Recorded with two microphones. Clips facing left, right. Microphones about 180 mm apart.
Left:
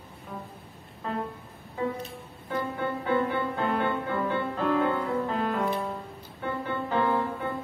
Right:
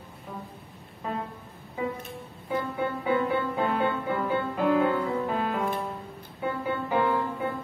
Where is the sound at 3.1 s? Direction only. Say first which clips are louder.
Right 1 dB; 10° right (ahead or behind).